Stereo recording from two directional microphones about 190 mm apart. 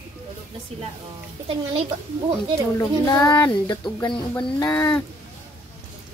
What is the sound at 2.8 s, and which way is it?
Speech, 15° left (ahead or behind).